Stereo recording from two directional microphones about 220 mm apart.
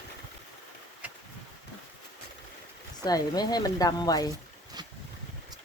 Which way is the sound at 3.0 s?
15° left (ahead or behind).